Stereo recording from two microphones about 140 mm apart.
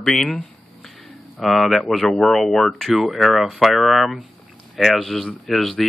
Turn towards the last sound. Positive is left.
turn(degrees=0)  # may be behind; listen again after turning